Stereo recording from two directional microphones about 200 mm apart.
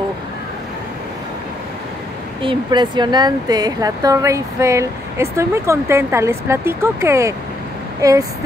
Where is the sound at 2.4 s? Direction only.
20° right (ahead or behind).